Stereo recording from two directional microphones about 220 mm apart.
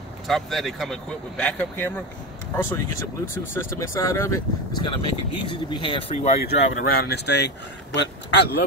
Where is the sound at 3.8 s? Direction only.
15° left (ahead or behind).